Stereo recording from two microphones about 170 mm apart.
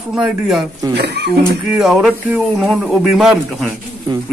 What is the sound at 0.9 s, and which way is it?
Speech, 80° right.